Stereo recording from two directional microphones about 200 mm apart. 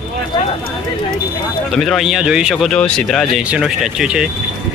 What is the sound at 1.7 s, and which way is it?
Speech, centre (ahead or behind).